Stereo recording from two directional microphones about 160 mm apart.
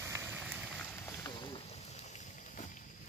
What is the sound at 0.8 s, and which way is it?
Boat, 15° left (ahead or behind).